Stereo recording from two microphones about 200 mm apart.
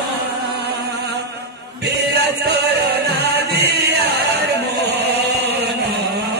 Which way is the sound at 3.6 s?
55° right (ahead or behind).